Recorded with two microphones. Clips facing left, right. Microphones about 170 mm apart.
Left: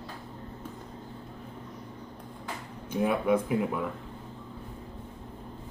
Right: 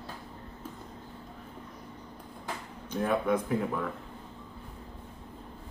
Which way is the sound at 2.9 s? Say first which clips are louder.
Left 2 dB; 10° left (ahead or behind).